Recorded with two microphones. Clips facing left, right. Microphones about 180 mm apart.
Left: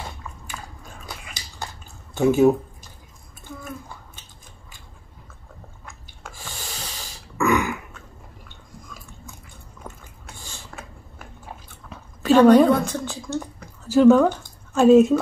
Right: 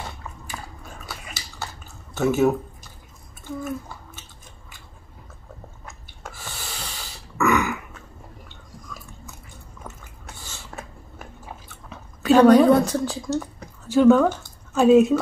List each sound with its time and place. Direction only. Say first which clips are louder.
1.0 s dog: even; 15° left (ahead or behind)
2.1 s speech: left 3 dB; 15° left (ahead or behind)
6.3 s snort: left 1 dB; 15° left (ahead or behind)
11.9 s a sound: even; centre (ahead or behind)
12.7 s a woman's voice: right 4 dB; 35° right (ahead or behind)
13.8 s speech: left 1 dB; centre (ahead or behind)